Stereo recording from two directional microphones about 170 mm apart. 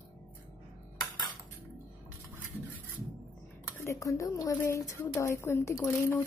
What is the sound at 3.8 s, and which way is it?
A woman's voice, 15° left (ahead or behind).